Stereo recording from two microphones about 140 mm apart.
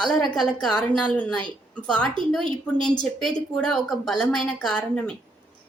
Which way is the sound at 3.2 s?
5° left (ahead or behind).